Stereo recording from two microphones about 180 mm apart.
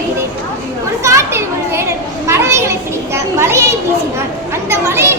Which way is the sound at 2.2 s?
15° right (ahead or behind).